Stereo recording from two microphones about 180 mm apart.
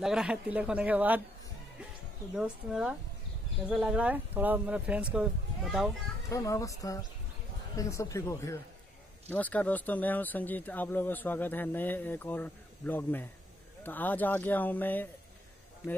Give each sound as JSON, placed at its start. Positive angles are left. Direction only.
{"t": 0.0, "sound": "speech", "side_deg": -5}
{"t": 2.3, "sound": "speech", "side_deg": -5}
{"t": 6.2, "sound": "speech", "side_deg": 20}